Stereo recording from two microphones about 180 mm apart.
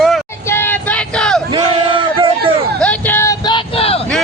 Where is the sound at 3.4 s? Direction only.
30° left (ahead or behind).